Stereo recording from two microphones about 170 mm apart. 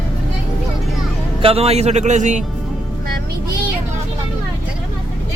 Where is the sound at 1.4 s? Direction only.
35° right (ahead or behind).